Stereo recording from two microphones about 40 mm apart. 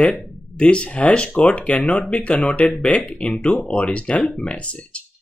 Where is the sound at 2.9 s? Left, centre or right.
Left.